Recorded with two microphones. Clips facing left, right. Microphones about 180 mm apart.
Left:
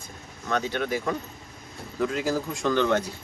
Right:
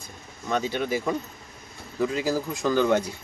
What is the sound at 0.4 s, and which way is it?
Speech, 10° right (ahead or behind).